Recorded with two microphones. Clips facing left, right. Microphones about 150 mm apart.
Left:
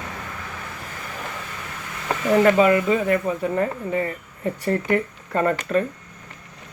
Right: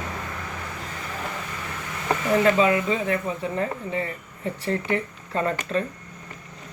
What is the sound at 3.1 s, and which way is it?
Speech, 45° left (ahead or behind).